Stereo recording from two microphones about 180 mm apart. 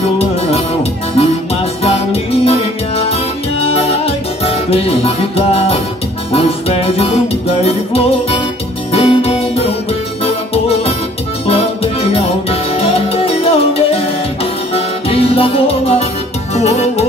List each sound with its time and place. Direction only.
0.0 s music: 35° left (ahead or behind)